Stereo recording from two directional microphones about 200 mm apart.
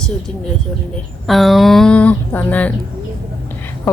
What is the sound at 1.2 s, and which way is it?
A woman's voice, centre (ahead or behind).